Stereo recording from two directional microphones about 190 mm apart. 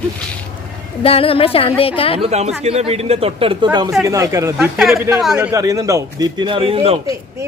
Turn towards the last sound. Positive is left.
turn(degrees=-30)  # may be behind; listen again after turning